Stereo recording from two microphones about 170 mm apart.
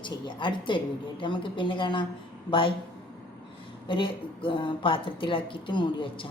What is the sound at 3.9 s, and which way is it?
A woman's voice, 30° left (ahead or behind).